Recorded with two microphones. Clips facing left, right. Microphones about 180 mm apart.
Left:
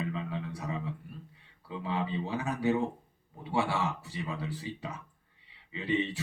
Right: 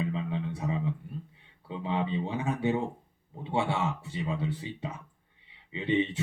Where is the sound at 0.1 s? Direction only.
25° right (ahead or behind).